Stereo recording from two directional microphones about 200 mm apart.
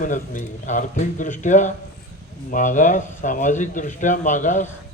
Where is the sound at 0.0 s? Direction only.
40° left (ahead or behind).